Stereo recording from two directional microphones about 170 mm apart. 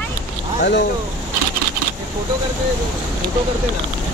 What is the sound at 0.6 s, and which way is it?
Speech, 75° left (ahead or behind).